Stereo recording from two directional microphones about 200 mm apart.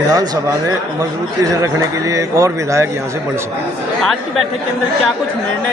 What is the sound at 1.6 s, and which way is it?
A man's voice, 15° right (ahead or behind).